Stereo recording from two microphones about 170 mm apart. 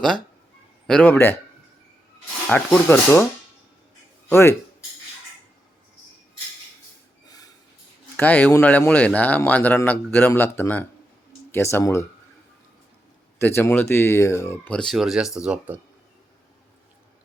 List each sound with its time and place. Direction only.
0.9 s speech: 5° left (ahead or behind)
2.5 s speech: 5° left (ahead or behind)
4.3 s speech: 15° left (ahead or behind)
7.3 s snort: 20° left (ahead or behind)
8.1 s speech: 10° left (ahead or behind)
13.4 s speech: 10° left (ahead or behind); by 15.8 s 5° right (ahead or behind)